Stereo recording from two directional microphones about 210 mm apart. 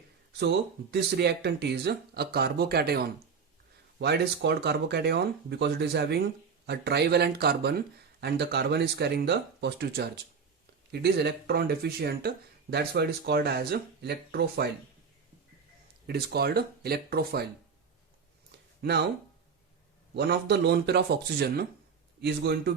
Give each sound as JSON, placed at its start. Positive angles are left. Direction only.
{"t": 0.9, "sound": "speech", "side_deg": -50}
{"t": 16.0, "sound": "speech", "side_deg": -50}
{"t": 18.8, "sound": "speech", "side_deg": -50}
{"t": 20.1, "sound": "speech", "side_deg": -50}